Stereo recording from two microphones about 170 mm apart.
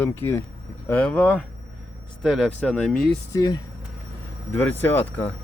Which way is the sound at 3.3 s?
20° left (ahead or behind).